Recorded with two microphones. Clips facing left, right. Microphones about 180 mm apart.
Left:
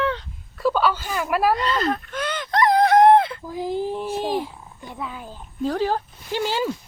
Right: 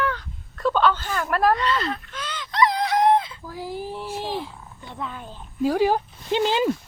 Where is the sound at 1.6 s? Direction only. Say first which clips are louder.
Left 2 dB; 40° left (ahead or behind); by 3.4 s 60° left (ahead or behind).